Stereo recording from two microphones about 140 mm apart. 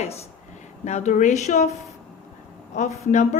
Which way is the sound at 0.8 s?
55° left (ahead or behind).